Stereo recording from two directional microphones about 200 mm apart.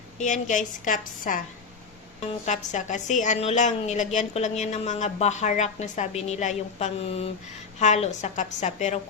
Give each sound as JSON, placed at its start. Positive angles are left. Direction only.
{"t": 0.2, "sound": "a woman's voice", "side_deg": 40}